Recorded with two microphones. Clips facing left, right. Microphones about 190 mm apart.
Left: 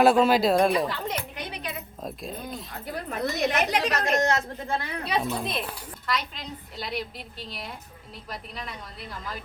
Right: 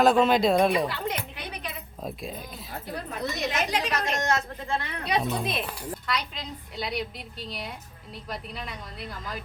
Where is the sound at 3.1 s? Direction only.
55° left (ahead or behind).